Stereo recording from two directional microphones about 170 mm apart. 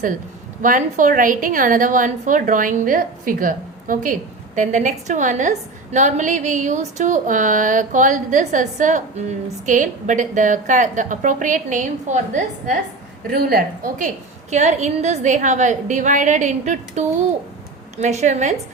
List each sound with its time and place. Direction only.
0.6 s a woman's voice: 50° right (ahead or behind)
13.3 s a woman's voice: 65° right (ahead or behind)
14.5 s a woman's voice: 45° right (ahead or behind)